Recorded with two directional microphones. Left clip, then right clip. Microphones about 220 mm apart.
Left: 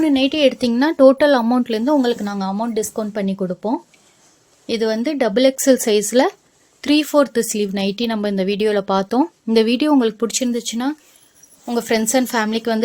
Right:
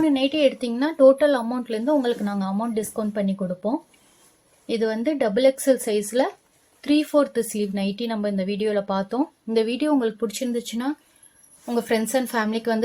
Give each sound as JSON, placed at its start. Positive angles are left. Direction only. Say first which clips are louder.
{"t": 0.0, "sound": "a woman's voice", "louder": "left 4 dB", "side_deg": 45}